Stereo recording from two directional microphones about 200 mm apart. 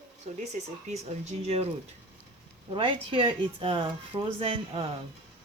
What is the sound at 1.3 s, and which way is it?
Speech, 30° right (ahead or behind).